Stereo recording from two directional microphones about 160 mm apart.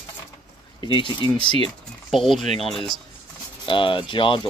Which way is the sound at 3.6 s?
30° left (ahead or behind).